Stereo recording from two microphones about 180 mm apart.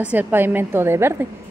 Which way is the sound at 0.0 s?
10° right (ahead or behind).